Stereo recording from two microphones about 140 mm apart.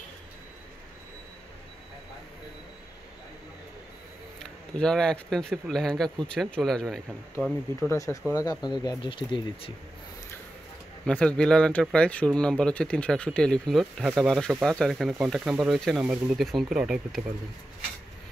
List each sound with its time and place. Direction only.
4.4 s speech: 5° left (ahead or behind)
7.9 s speech: 25° left (ahead or behind)
11.1 s speech: 5° left (ahead or behind)